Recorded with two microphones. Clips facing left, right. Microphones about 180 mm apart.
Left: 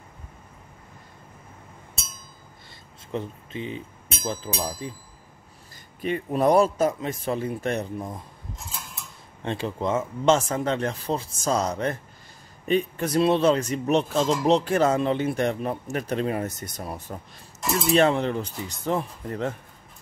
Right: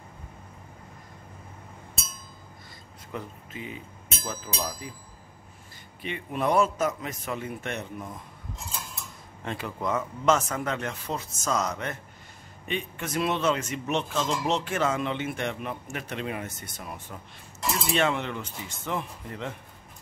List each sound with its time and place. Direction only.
3.1 s speech: 25° left (ahead or behind)
5.9 s speech: 40° left (ahead or behind)
9.4 s speech: 30° left (ahead or behind)